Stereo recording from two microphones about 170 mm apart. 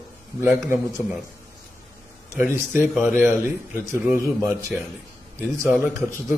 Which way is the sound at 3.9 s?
15° right (ahead or behind).